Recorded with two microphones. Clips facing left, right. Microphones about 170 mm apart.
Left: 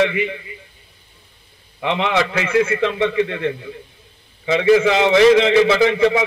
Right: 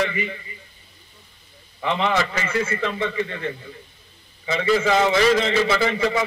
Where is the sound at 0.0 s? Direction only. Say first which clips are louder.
Left 6 dB; 65° left (ahead or behind).